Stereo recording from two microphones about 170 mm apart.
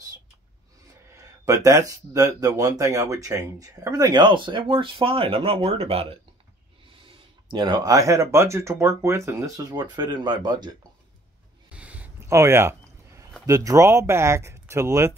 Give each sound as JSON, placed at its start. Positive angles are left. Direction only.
{"t": 1.1, "sound": "speech", "side_deg": -20}
{"t": 7.5, "sound": "speech", "side_deg": -25}
{"t": 11.7, "sound": "a sound", "side_deg": -10}
{"t": 13.5, "sound": "speech", "side_deg": -20}